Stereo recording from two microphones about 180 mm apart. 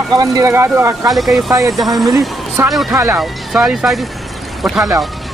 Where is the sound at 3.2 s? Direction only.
Centre (ahead or behind).